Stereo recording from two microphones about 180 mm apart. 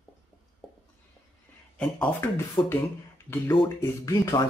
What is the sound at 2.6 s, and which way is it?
Speech, 25° left (ahead or behind).